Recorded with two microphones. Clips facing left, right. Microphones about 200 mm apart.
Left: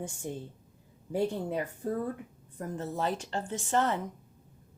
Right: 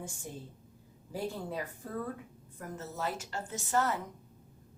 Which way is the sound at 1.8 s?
40° left (ahead or behind).